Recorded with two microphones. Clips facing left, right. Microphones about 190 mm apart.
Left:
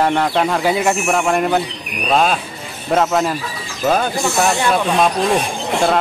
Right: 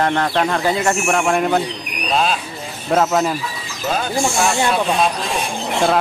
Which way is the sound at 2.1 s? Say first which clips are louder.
Left 3 dB; 50° left (ahead or behind).